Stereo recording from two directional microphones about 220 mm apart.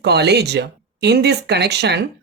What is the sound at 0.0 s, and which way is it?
Speech, 50° right (ahead or behind).